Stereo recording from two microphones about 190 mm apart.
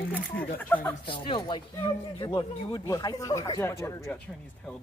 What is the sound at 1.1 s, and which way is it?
Speech, 25° left (ahead or behind).